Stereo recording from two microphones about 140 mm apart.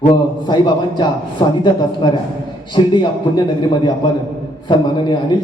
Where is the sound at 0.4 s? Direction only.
35° left (ahead or behind).